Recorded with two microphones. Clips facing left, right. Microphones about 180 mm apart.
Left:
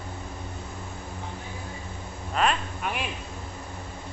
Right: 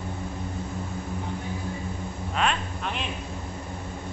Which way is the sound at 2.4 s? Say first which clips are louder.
Left 2 dB; 5° left (ahead or behind).